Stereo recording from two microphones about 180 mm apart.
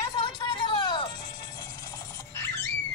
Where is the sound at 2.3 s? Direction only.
15° left (ahead or behind).